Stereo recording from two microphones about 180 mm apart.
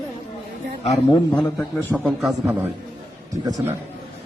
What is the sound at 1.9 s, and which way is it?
Speech, 5° right (ahead or behind).